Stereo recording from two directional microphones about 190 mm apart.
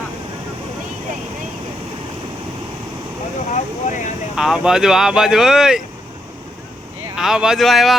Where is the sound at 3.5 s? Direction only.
40° left (ahead or behind).